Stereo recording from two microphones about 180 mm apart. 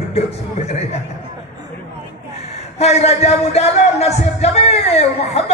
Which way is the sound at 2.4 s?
35° left (ahead or behind).